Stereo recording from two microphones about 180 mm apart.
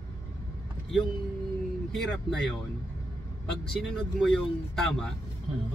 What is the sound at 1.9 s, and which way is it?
Speech, centre (ahead or behind).